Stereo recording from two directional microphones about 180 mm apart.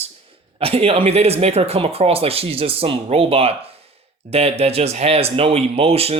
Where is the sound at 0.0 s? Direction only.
30° right (ahead or behind).